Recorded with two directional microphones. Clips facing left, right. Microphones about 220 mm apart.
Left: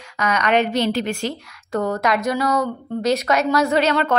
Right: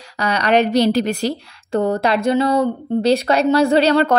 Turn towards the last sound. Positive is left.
turn(degrees=-30)  # may be behind; listen again after turning